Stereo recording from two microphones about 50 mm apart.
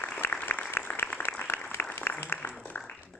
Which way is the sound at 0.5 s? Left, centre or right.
Left.